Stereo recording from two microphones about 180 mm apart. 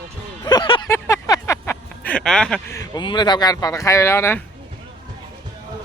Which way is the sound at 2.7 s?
20° left (ahead or behind).